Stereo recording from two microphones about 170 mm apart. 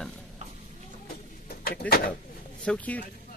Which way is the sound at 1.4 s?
60° left (ahead or behind).